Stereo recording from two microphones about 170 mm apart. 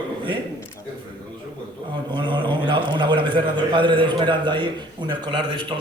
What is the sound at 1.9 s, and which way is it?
A man's voice, 30° right (ahead or behind).